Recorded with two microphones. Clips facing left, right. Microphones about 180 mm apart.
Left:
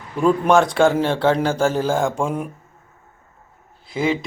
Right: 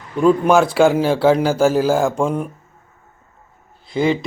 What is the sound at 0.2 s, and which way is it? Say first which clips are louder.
Speech: right 2 dB; centre (ahead or behind).